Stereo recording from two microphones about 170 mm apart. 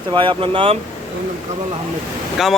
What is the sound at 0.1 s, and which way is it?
Speech, 30° right (ahead or behind).